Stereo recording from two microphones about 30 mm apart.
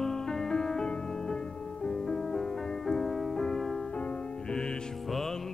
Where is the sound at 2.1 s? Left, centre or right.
Centre.